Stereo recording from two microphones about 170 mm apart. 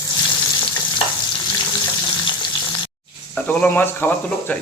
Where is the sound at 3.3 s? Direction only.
5° left (ahead or behind).